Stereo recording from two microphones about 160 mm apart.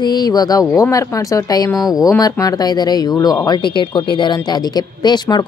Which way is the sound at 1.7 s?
Centre (ahead or behind).